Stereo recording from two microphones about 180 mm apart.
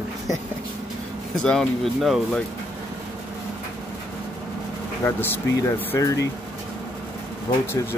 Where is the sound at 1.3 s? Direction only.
5° left (ahead or behind).